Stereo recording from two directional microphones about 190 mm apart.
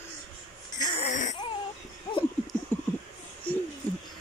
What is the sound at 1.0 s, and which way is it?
Baby cry, 40° left (ahead or behind).